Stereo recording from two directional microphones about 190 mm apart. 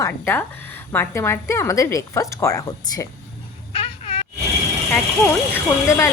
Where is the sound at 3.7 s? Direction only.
30° left (ahead or behind).